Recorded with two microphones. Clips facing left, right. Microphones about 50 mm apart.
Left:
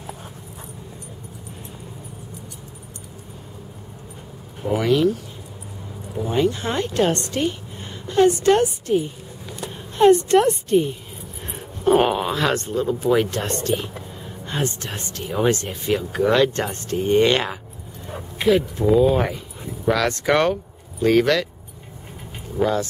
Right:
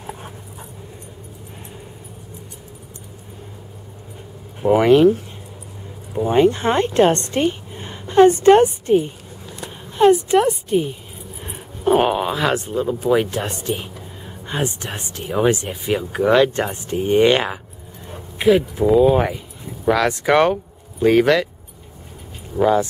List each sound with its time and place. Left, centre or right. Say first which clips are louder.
4.6 s a woman's voice: right 7 dB; right
9.7 s speech: right 1 dB; centre
22.6 s speech: right 5 dB; centre